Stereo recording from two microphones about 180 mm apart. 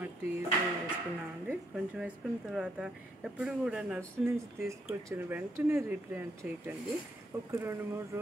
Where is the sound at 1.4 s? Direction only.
5° right (ahead or behind).